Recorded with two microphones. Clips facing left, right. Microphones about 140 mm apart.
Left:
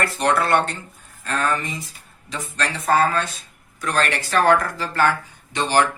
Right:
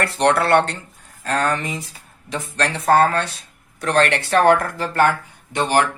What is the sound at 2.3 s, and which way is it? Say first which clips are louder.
Speech: right 4 dB; 65° right (ahead or behind).